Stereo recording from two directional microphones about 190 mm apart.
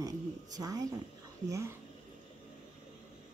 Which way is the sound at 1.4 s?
15° right (ahead or behind).